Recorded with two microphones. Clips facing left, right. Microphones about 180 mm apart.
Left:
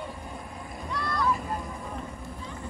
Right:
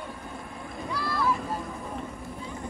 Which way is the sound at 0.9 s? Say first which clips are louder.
Even; centre (ahead or behind).